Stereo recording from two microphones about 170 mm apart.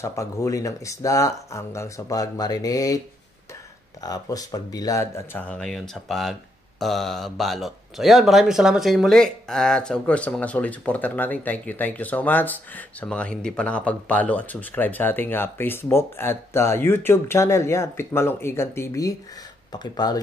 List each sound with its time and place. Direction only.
0.0 s speech: 20° left (ahead or behind)
4.0 s speech: 20° left (ahead or behind)